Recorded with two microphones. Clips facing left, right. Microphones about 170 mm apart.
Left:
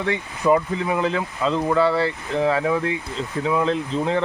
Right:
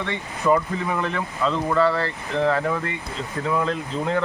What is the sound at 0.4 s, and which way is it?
Speech, 10° left (ahead or behind).